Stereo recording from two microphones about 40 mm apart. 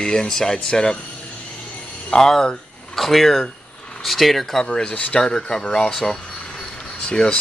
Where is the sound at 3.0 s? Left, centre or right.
Centre.